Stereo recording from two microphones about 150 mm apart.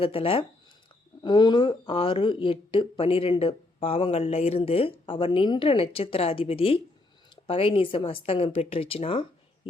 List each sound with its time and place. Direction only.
0.0 s speech: 40° left (ahead or behind)